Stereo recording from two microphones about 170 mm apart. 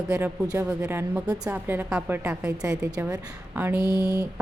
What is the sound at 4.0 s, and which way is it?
Speech, 20° right (ahead or behind).